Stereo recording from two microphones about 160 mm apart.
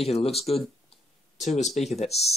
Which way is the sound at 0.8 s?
45° left (ahead or behind).